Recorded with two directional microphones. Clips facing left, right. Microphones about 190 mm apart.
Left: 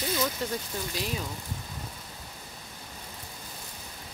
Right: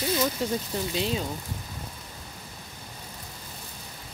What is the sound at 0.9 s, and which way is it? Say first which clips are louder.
Speech: right 6 dB; 25° right (ahead or behind).